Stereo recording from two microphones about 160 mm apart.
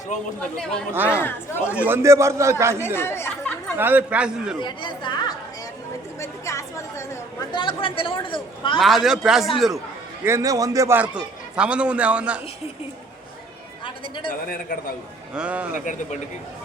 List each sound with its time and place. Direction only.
0.9 s a man's voice: 10° right (ahead or behind)
1.2 s speech: 15° left (ahead or behind)
1.7 s a man's voice: 10° right (ahead or behind)
2.8 s speech: 15° left (ahead or behind)
3.8 s a man's voice: 10° right (ahead or behind)
4.6 s chatter: 30° left (ahead or behind)
7.5 s speech: 30° left (ahead or behind)
8.8 s a man's voice: centre (ahead or behind)
10.2 s a man's voice: 20° right (ahead or behind)
14.4 s a man's voice: 65° left (ahead or behind)
15.4 s a man's voice: 5° right (ahead or behind)
15.7 s speech: 55° left (ahead or behind)